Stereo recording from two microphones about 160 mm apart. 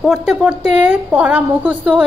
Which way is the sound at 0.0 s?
5° right (ahead or behind).